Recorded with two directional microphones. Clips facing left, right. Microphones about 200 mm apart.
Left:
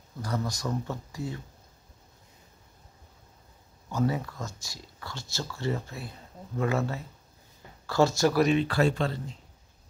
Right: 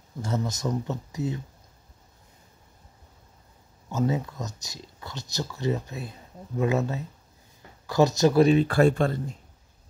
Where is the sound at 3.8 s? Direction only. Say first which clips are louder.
Right 2 dB; 20° right (ahead or behind).